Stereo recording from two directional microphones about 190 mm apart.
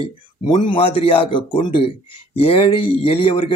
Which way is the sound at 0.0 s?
25° left (ahead or behind).